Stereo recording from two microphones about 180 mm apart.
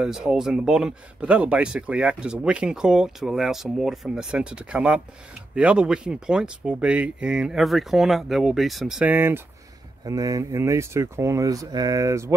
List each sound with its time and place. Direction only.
0.0 s speech: centre (ahead or behind)